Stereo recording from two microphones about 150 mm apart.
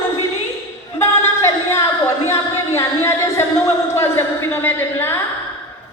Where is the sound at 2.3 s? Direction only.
20° left (ahead or behind).